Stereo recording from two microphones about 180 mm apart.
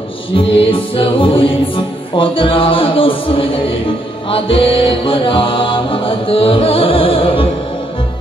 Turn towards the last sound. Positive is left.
turn(degrees=30)  # may be behind; listen again after turning